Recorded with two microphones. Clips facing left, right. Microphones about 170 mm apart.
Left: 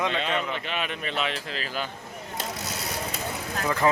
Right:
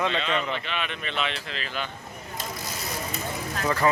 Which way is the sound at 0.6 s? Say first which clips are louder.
Left 1 dB; 45° left (ahead or behind).